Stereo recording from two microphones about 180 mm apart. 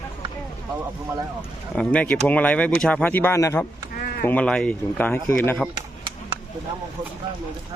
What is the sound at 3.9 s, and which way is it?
Bleat, 55° left (ahead or behind).